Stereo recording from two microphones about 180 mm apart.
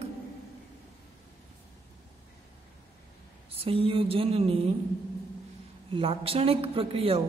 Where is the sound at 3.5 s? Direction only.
30° right (ahead or behind).